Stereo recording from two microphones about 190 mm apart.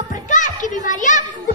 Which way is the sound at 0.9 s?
40° left (ahead or behind).